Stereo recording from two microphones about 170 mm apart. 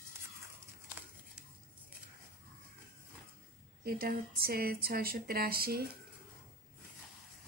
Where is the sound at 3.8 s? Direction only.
60° right (ahead or behind).